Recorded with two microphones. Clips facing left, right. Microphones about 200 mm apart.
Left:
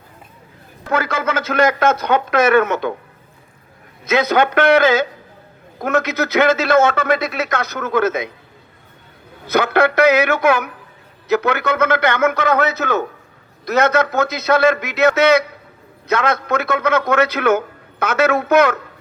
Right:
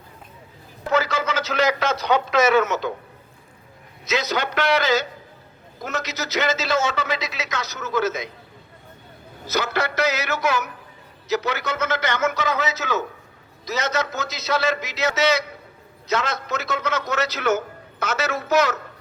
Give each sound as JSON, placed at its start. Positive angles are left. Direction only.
{"t": 0.9, "sound": "a man's voice", "side_deg": 55}
{"t": 4.0, "sound": "a man's voice", "side_deg": 55}
{"t": 9.5, "sound": "a man's voice", "side_deg": 55}